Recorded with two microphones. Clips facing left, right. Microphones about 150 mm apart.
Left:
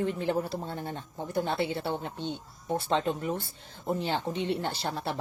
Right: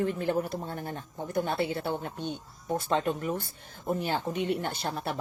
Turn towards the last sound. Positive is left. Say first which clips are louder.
# even
turn(degrees=25)  # may be behind; listen again after turning